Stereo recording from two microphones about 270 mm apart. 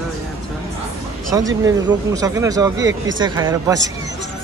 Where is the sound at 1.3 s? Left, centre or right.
Centre.